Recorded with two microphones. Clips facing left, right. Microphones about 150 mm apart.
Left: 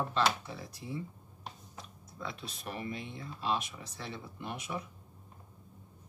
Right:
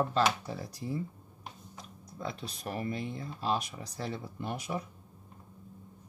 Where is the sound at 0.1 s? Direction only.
40° right (ahead or behind).